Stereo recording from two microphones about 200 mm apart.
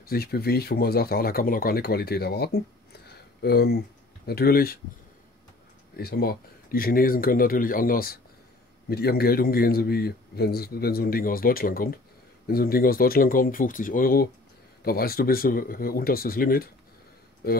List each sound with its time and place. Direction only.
0.0 s a man's voice: 50° left (ahead or behind)
5.9 s a man's voice: 50° left (ahead or behind)